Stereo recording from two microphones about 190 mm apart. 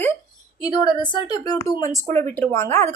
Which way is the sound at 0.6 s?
20° left (ahead or behind).